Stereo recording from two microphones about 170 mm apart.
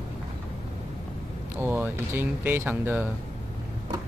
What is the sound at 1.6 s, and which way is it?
Speech, 10° right (ahead or behind).